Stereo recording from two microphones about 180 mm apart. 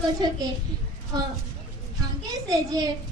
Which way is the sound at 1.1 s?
25° right (ahead or behind).